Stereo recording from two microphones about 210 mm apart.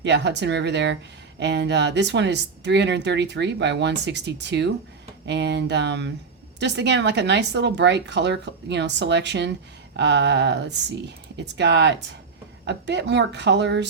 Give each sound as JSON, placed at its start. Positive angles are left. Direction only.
{"t": 0.0, "sound": "speech", "side_deg": -55}